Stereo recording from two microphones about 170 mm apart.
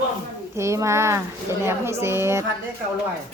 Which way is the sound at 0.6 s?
15° right (ahead or behind).